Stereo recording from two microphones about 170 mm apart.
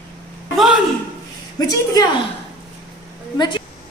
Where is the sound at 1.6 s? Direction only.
20° left (ahead or behind).